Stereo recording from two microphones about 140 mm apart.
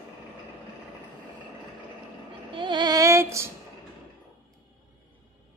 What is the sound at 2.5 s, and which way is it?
Child singing, 35° right (ahead or behind).